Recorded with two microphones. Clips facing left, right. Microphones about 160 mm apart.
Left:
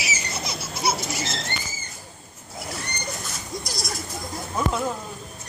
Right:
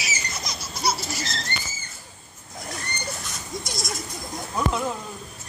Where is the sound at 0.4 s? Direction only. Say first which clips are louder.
Left 3 dB; 25° left (ahead or behind).